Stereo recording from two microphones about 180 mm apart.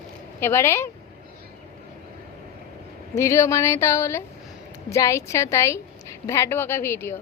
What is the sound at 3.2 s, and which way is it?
A woman's voice, 15° left (ahead or behind).